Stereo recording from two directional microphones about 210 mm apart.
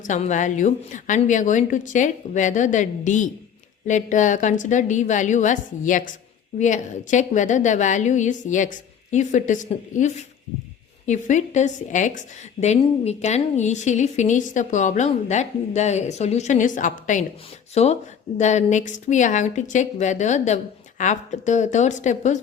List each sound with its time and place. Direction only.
0.0 s a woman's voice: 35° left (ahead or behind)